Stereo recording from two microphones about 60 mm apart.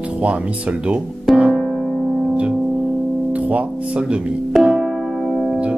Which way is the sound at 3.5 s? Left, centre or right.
Right.